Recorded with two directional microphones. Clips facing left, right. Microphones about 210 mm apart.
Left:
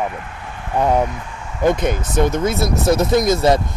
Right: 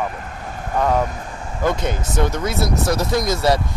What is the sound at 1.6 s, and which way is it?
Speech, 20° left (ahead or behind).